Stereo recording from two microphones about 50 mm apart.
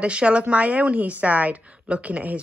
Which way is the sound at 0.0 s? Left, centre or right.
Right.